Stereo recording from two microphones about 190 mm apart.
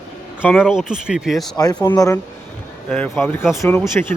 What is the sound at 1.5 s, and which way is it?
Speech, 20° left (ahead or behind).